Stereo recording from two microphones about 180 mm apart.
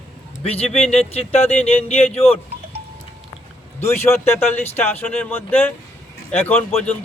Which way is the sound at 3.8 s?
15° left (ahead or behind).